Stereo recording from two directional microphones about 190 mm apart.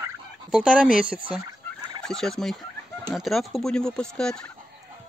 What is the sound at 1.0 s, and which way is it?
Fowl, 45° left (ahead or behind).